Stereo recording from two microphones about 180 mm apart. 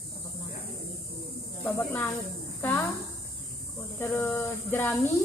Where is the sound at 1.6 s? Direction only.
10° left (ahead or behind).